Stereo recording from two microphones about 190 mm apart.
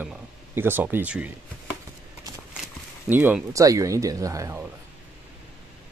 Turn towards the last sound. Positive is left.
turn(degrees=-15)  # may be behind; listen again after turning